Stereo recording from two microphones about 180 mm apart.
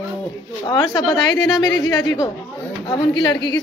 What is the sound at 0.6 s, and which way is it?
A woman's voice, 25° left (ahead or behind).